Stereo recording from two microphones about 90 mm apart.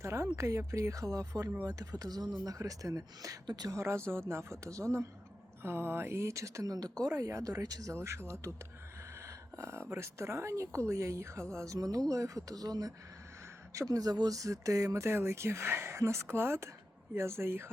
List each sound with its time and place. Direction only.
0.0 s speech: 30° right (ahead or behind)
7.9 s speech: 30° right (ahead or behind)